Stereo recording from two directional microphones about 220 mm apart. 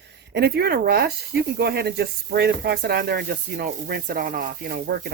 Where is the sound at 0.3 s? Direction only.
45° right (ahead or behind).